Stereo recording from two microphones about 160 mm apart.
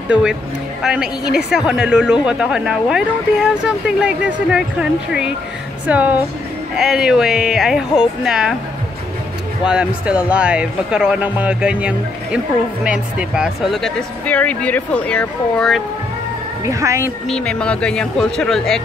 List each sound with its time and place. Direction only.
0.1 s speech: 5° right (ahead or behind)
9.7 s speech: 5° right (ahead or behind)
16.6 s speech: 20° right (ahead or behind)
17.3 s speech: 5° left (ahead or behind)